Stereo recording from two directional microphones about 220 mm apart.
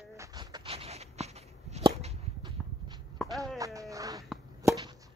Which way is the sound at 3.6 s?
15° right (ahead or behind).